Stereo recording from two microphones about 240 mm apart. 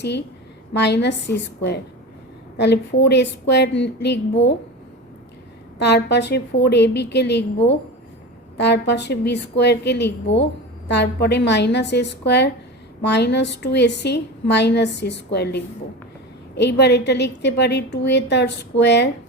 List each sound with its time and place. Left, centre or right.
0.7 s a woman's voice: left
2.6 s a woman's voice: left
5.8 s a woman's voice: left